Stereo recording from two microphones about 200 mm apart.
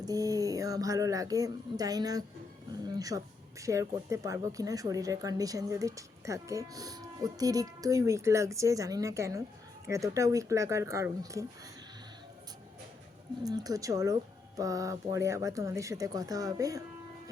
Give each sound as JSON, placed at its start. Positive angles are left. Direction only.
{"t": 0.0, "sound": "speech", "side_deg": -20}
{"t": 13.4, "sound": "speech", "side_deg": -20}